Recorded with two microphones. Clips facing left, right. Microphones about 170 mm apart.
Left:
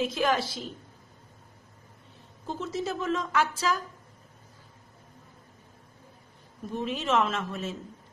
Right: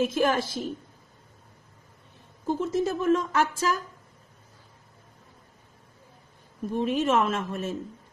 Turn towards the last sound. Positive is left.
turn(degrees=-50)  # may be behind; listen again after turning